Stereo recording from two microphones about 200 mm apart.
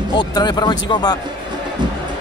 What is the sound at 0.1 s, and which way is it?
Speech, 20° left (ahead or behind).